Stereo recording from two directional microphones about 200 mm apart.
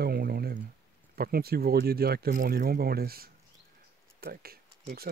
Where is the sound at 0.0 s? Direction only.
50° right (ahead or behind).